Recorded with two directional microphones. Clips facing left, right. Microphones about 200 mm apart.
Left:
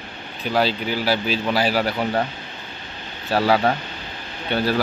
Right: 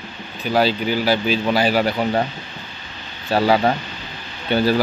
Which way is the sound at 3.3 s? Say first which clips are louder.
Right 2 dB; centre (ahead or behind).